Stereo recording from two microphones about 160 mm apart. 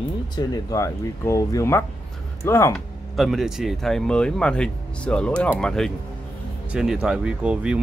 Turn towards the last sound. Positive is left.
turn(degrees=-5)  # may be behind; listen again after turning